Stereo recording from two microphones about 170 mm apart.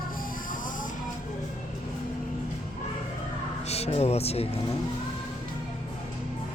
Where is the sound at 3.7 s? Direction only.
40° left (ahead or behind).